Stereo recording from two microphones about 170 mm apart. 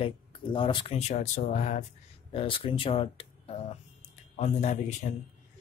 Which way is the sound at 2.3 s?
30° left (ahead or behind).